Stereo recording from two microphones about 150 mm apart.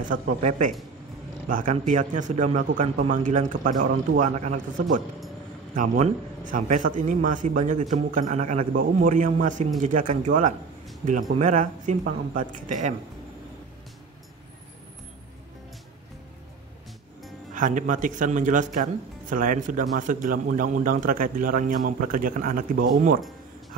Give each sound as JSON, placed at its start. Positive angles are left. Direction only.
{"t": 0.0, "sound": "speech", "side_deg": -55}
{"t": 17.6, "sound": "speech", "side_deg": -60}